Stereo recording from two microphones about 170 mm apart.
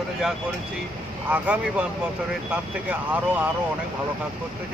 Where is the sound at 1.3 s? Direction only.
10° right (ahead or behind).